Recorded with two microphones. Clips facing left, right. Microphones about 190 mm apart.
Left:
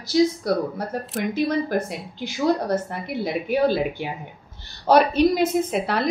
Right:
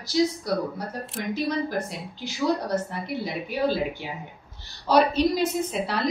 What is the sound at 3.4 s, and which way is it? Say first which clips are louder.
A woman's voice: left 5 dB; 60° left (ahead or behind).